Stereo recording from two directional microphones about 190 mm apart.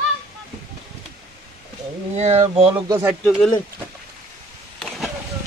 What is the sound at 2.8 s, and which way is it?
Speech, 20° right (ahead or behind).